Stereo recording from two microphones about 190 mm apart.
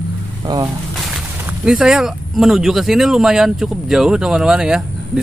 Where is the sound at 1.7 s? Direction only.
5° right (ahead or behind).